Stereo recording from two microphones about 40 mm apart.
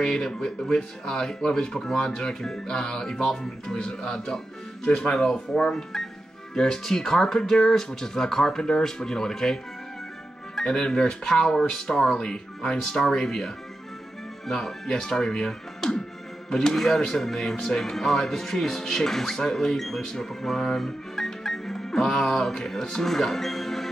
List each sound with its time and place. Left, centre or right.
0.0 s speech: centre
14.5 s speech: centre